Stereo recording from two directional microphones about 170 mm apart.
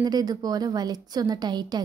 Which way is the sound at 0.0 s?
25° right (ahead or behind).